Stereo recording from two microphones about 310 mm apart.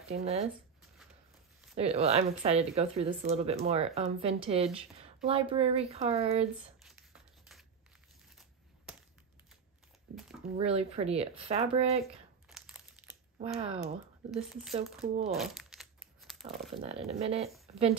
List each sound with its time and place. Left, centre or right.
0.1 s speech: centre
1.8 s speech: centre
8.9 s a sound: centre
10.6 s speech: centre
12.4 s crumpling: centre
13.4 s speech: centre
14.3 s speech: centre
15.3 s crumpling: centre
16.7 s speech: centre